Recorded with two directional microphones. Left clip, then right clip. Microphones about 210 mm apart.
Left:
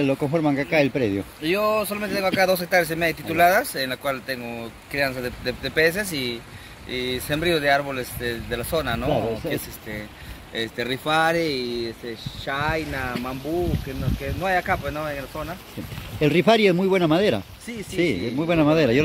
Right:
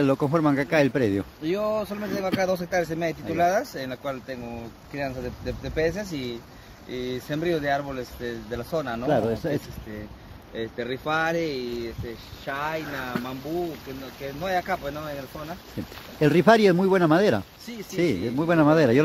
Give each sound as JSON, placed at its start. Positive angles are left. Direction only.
{"t": 0.0, "sound": "speech", "side_deg": -15}
{"t": 1.4, "sound": "speech", "side_deg": 5}
{"t": 10.5, "sound": "speech", "side_deg": 55}
{"t": 12.4, "sound": "speech", "side_deg": 40}
{"t": 14.4, "sound": "speech", "side_deg": 20}
{"t": 16.2, "sound": "speech", "side_deg": -10}